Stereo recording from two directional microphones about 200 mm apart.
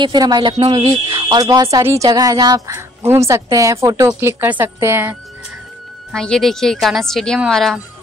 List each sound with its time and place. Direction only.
0.0 s speech: 20° right (ahead or behind)
6.1 s speech: 5° left (ahead or behind)